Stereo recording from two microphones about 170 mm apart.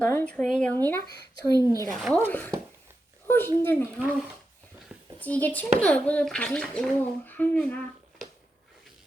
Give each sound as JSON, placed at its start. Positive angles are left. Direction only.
{"t": 0.0, "sound": "a child's voice", "side_deg": 10}
{"t": 1.5, "sound": "a woman's voice", "side_deg": -20}
{"t": 1.9, "sound": "speech", "side_deg": 0}
{"t": 3.2, "sound": "a child's voice", "side_deg": 15}
{"t": 5.2, "sound": "a child's voice", "side_deg": 10}